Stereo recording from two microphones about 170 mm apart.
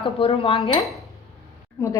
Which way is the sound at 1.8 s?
15° left (ahead or behind).